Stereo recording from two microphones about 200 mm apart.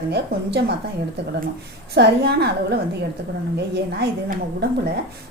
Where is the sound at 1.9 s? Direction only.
55° right (ahead or behind).